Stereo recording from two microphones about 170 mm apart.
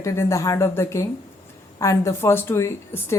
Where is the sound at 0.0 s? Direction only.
15° left (ahead or behind).